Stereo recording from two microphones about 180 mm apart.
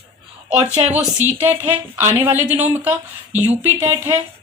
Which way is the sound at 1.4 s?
10° right (ahead or behind).